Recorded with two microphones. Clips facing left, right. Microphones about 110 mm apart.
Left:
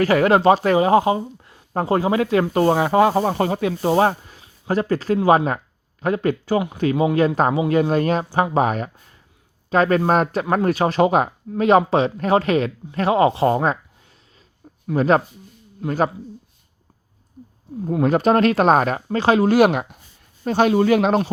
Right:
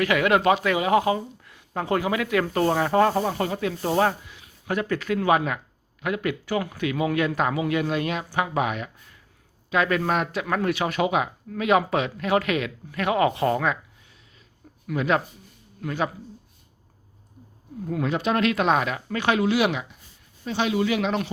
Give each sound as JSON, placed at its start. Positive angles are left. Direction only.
{"t": 0.0, "sound": "speech", "side_deg": 35}
{"t": 2.9, "sound": "speech", "side_deg": 10}
{"t": 3.2, "sound": "speech", "side_deg": 35}
{"t": 3.6, "sound": "speech", "side_deg": 20}
{"t": 3.9, "sound": "speech", "side_deg": 35}
{"t": 6.5, "sound": "speech", "side_deg": 25}
{"t": 15.8, "sound": "speech", "side_deg": 25}
{"t": 17.8, "sound": "speech", "side_deg": 40}